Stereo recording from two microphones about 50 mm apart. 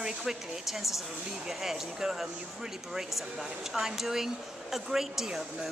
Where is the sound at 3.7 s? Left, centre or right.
Centre.